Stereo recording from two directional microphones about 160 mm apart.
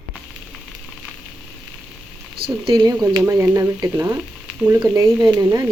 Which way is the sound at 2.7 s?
25° right (ahead or behind).